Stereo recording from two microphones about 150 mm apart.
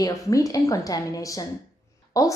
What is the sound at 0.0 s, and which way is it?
A woman's voice, 20° left (ahead or behind).